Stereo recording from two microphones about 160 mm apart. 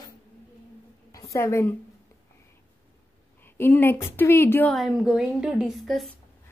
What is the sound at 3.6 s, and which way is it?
A woman's voice, 15° left (ahead or behind).